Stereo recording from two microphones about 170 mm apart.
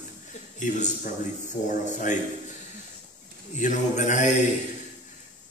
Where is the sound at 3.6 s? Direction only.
45° left (ahead or behind).